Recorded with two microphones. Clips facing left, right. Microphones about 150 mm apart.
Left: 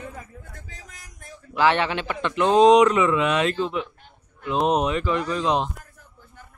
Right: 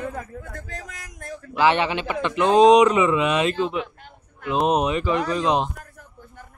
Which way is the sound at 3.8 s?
85° right.